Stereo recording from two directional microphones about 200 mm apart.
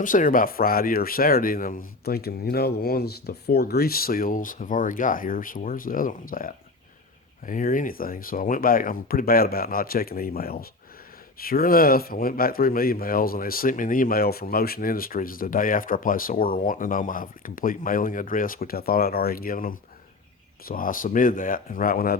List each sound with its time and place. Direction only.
0.0 s speech: 40° left (ahead or behind)